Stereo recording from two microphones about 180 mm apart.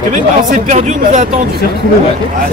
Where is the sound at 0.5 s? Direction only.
40° right (ahead or behind).